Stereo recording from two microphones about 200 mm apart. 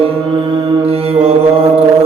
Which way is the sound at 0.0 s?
25° right (ahead or behind).